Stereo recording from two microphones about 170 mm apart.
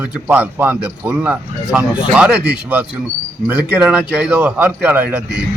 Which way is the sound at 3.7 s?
5° right (ahead or behind).